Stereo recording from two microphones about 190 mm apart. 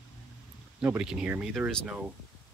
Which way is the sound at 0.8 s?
5° right (ahead or behind).